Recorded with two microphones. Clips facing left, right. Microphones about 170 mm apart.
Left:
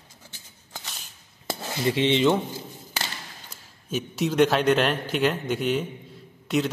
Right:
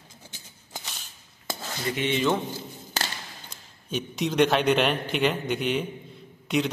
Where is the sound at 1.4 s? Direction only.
25° left (ahead or behind).